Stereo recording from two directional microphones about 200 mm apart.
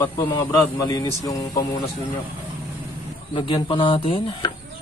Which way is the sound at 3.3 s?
25° left (ahead or behind).